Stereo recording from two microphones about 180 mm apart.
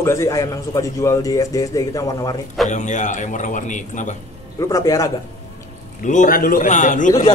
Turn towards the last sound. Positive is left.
turn(degrees=45)  # may be behind; listen again after turning